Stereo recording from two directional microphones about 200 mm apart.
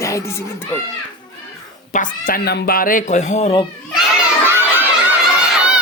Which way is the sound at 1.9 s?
45° left (ahead or behind).